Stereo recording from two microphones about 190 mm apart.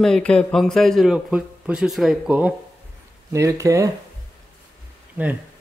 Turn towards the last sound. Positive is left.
turn(degrees=-10)  # may be behind; listen again after turning